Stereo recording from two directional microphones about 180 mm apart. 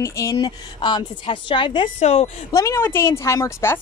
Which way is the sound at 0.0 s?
15° left (ahead or behind).